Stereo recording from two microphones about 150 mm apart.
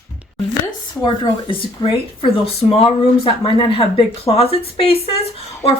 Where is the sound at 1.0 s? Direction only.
35° left (ahead or behind).